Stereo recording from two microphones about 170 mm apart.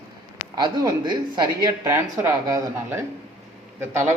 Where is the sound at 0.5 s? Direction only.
20° right (ahead or behind).